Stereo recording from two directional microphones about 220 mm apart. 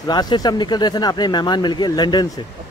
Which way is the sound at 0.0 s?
20° left (ahead or behind).